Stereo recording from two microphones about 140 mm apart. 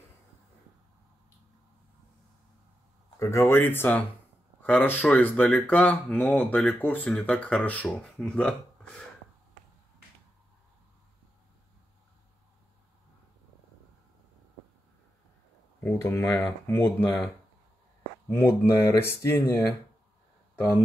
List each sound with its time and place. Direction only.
3.2 s speech: 20° left (ahead or behind); by 9.0 s 5° left (ahead or behind)
15.8 s speech: 20° left (ahead or behind)
18.3 s speech: 15° left (ahead or behind)